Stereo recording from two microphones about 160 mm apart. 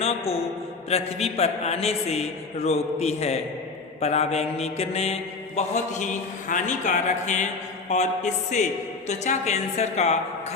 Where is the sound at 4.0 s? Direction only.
40° left (ahead or behind).